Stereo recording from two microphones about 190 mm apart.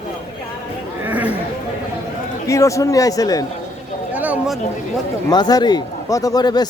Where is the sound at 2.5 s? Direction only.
15° left (ahead or behind).